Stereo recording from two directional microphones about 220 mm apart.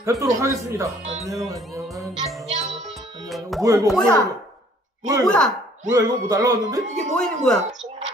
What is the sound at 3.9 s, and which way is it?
Speech, 5° left (ahead or behind).